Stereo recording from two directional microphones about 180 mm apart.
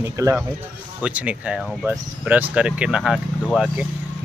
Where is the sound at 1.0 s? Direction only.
5° right (ahead or behind).